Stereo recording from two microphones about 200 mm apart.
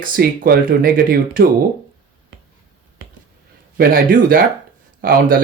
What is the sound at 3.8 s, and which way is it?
Speech, 50° right (ahead or behind).